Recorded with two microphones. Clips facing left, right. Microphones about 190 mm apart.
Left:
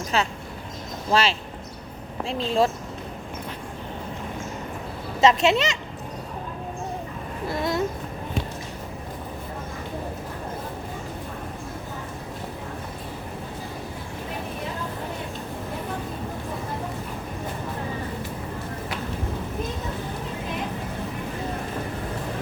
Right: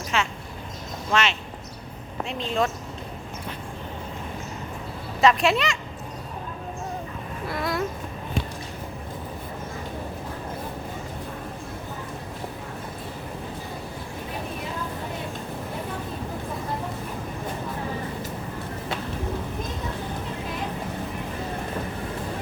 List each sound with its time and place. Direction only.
0.1 s speech: 35° left (ahead or behind)
5.2 s speech: 25° left (ahead or behind)
7.4 s speech: 25° left (ahead or behind)